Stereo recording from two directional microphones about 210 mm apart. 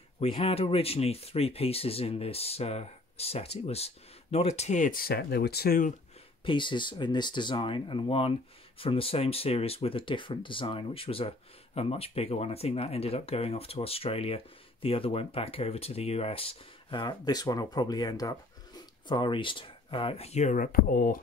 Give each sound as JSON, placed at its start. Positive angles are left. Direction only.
{"t": 0.2, "sound": "speech", "side_deg": 25}
{"t": 6.4, "sound": "speech", "side_deg": 25}